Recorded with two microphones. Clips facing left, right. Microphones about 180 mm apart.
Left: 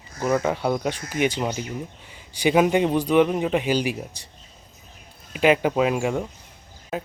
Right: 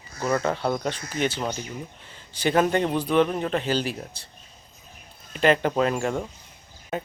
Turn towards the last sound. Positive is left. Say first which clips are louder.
# left 1 dB
turn(degrees=5)  # may be behind; listen again after turning